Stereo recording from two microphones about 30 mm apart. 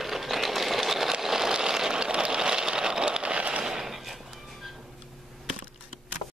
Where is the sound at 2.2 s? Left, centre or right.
Right.